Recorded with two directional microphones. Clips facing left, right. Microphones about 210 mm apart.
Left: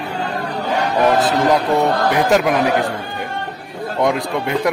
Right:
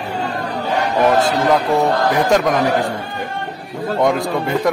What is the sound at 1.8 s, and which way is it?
Speech, centre (ahead or behind).